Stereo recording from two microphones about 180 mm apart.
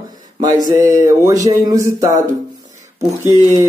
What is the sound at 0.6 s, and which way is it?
Mantra, 15° right (ahead or behind).